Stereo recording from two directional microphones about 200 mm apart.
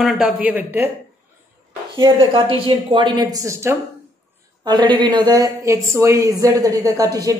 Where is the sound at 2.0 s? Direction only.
25° right (ahead or behind).